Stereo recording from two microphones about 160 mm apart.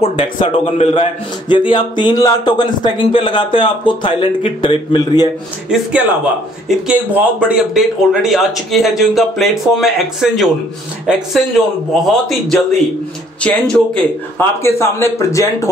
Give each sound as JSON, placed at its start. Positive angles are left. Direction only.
{"t": 0.0, "sound": "speech", "side_deg": 35}
{"t": 0.4, "sound": "a man's voice", "side_deg": 45}
{"t": 1.5, "sound": "speech", "side_deg": 30}
{"t": 6.9, "sound": "speech", "side_deg": -10}
{"t": 14.6, "sound": "a man's voice", "side_deg": 15}